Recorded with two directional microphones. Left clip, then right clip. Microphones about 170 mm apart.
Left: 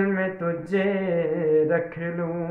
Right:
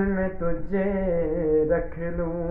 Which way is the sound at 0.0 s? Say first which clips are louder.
Left 2 dB; 30° left (ahead or behind).